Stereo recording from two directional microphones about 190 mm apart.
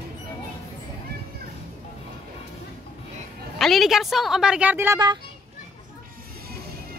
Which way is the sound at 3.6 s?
Centre (ahead or behind).